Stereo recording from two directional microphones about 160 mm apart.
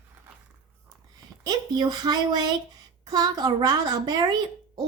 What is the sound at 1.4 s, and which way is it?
Speech, 25° right (ahead or behind).